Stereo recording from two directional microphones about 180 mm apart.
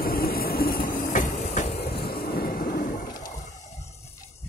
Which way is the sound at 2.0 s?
55° left (ahead or behind).